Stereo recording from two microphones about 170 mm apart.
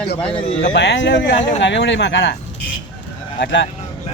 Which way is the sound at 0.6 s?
90° left.